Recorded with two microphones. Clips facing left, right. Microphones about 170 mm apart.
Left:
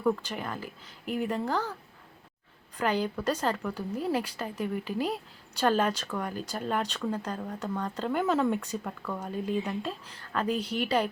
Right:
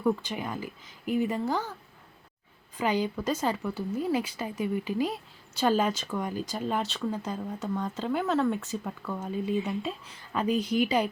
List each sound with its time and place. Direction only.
0.0 s speech: 10° right (ahead or behind)
2.7 s speech: 10° right (ahead or behind)